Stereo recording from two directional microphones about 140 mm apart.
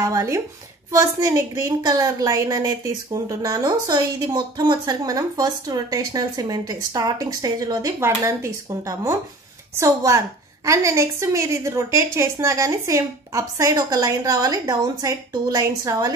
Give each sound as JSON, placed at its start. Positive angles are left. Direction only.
{"t": 0.0, "sound": "a woman's voice", "side_deg": -20}